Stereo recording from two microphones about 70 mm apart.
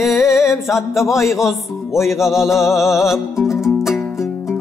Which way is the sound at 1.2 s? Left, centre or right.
Left.